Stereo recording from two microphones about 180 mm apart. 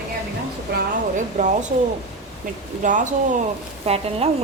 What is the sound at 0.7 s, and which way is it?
Speech, 55° right (ahead or behind).